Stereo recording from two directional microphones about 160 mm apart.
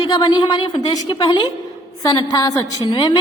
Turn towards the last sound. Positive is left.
turn(degrees=25)  # may be behind; listen again after turning